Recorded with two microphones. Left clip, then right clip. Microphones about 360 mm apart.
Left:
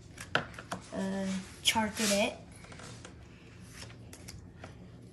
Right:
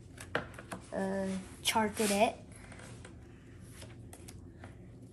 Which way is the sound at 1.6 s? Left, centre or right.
Centre.